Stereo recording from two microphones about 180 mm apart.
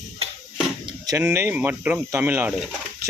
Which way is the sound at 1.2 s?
10° right (ahead or behind).